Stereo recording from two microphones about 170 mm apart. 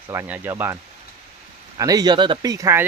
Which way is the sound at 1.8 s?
20° right (ahead or behind).